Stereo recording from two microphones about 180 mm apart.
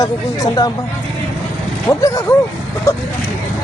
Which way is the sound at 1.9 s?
15° left (ahead or behind).